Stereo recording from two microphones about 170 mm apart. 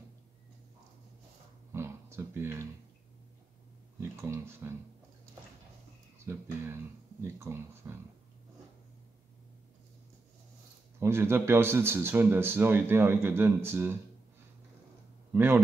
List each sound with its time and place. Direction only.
1.7 s a sound: 15° right (ahead or behind)
4.0 s speech: 15° right (ahead or behind)
6.2 s a man's voice: 15° right (ahead or behind)
11.0 s a man's voice: 15° right (ahead or behind)
15.3 s a man's voice: 15° right (ahead or behind)